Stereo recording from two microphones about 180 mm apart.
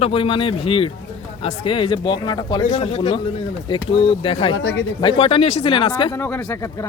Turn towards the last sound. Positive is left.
turn(degrees=10)  # may be behind; listen again after turning